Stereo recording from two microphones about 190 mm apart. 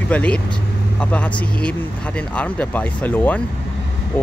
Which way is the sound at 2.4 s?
5° left (ahead or behind).